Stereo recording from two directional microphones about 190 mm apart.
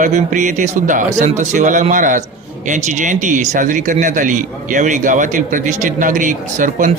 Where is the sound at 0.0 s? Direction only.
40° right (ahead or behind).